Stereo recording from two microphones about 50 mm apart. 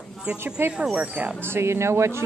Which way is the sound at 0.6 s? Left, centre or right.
Right.